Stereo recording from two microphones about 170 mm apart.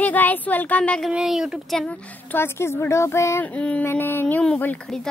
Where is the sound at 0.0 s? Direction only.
10° left (ahead or behind).